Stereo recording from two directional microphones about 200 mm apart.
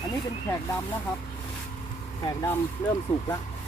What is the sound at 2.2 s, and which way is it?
Speech, 15° left (ahead or behind).